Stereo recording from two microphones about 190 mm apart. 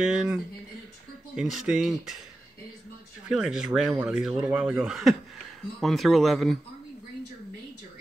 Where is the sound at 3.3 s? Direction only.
5° right (ahead or behind).